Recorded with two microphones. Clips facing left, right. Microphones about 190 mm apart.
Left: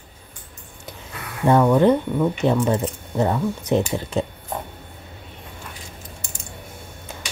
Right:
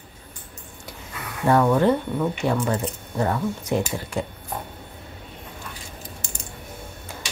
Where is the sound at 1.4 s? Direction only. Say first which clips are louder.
Left 3 dB; 15° left (ahead or behind).